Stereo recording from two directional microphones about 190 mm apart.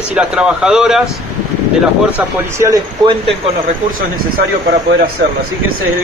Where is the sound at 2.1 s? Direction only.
15° right (ahead or behind).